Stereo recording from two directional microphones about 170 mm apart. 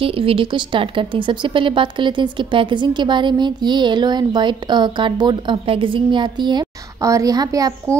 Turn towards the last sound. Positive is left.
turn(degrees=-20)  # may be behind; listen again after turning